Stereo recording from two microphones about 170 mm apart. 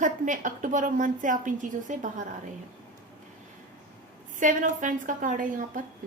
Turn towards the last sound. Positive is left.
turn(degrees=-50)  # may be behind; listen again after turning